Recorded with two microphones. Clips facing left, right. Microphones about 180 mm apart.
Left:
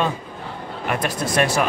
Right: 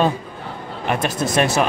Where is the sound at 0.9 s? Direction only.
25° right (ahead or behind).